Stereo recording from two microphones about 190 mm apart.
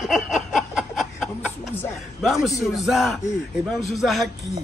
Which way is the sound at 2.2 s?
Centre (ahead or behind).